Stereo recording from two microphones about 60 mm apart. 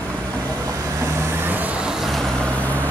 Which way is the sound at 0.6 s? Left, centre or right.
Right.